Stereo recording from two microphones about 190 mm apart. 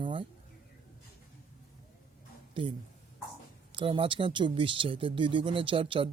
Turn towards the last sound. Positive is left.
turn(degrees=-25)  # may be behind; listen again after turning